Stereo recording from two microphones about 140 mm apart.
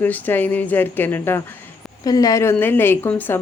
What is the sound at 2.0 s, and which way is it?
Speech, 25° left (ahead or behind).